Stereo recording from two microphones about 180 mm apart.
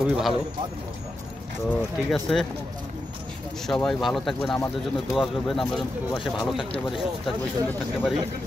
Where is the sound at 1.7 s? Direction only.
Centre (ahead or behind).